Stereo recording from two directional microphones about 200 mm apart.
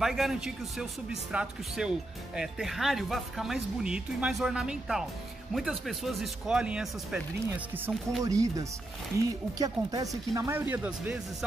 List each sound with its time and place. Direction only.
0.0 s speech: centre (ahead or behind)